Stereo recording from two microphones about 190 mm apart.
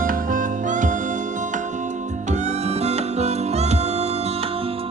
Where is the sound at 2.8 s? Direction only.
35° right (ahead or behind).